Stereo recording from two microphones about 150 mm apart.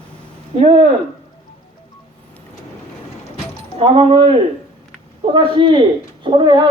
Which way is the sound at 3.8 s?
35° right (ahead or behind).